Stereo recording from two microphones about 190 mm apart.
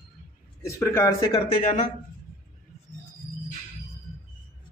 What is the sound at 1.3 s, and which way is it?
Speech, 35° left (ahead or behind).